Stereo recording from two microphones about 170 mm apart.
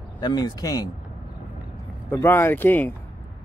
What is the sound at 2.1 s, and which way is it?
Speech, 15° left (ahead or behind).